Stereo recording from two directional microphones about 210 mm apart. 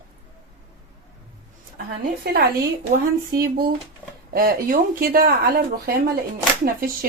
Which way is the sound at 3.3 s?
45° right (ahead or behind).